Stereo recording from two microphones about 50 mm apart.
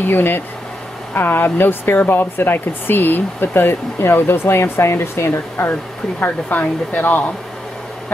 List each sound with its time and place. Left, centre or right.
0.0 s speech: left
6.2 s speech: left